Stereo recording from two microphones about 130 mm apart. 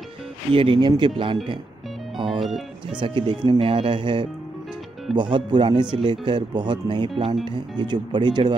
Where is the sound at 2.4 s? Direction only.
Centre (ahead or behind).